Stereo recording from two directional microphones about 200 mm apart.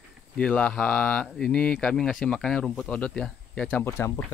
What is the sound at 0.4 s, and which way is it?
Speech, 5° left (ahead or behind).